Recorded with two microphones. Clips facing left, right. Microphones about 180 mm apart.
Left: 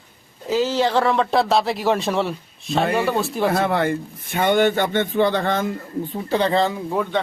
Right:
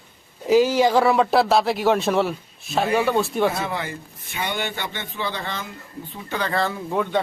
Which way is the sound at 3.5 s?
60° left (ahead or behind).